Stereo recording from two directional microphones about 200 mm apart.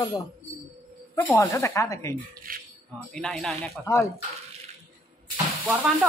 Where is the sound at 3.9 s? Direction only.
15° left (ahead or behind).